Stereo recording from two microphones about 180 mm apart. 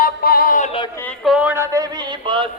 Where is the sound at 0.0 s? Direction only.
55° left (ahead or behind).